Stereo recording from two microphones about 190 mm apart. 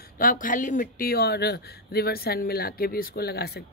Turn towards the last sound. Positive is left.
turn(degrees=55)  # may be behind; listen again after turning